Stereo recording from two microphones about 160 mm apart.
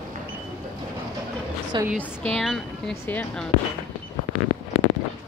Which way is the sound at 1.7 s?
30° right (ahead or behind).